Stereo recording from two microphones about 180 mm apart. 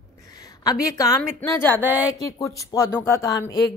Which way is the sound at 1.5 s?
10° left (ahead or behind).